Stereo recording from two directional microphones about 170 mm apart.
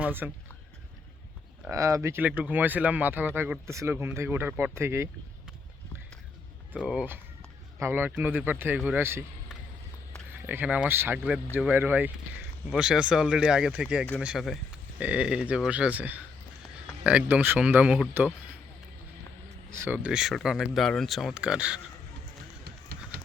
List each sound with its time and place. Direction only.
0.0 s speech: 10° right (ahead or behind)
1.7 s speech: 20° right (ahead or behind)
6.7 s a man's voice: 5° right (ahead or behind)
19.7 s speech: 10° right (ahead or behind)
22.6 s music: 70° right (ahead or behind)